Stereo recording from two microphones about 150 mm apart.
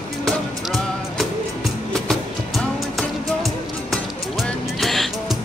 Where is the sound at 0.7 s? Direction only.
Centre (ahead or behind).